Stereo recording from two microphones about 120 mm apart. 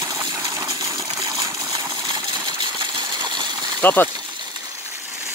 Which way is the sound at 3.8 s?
15° left (ahead or behind).